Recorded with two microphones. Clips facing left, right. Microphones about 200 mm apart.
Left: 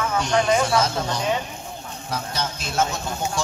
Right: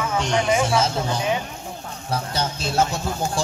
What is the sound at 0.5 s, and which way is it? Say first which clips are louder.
Speech: right 1 dB; 5° right (ahead or behind).